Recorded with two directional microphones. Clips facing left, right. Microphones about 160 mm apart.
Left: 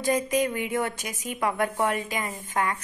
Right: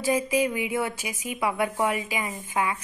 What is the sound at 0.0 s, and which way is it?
A woman's voice, 5° right (ahead or behind).